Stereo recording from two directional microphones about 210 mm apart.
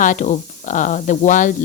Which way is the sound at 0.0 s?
35° left (ahead or behind).